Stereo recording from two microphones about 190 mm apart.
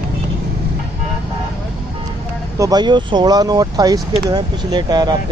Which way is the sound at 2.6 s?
20° right (ahead or behind).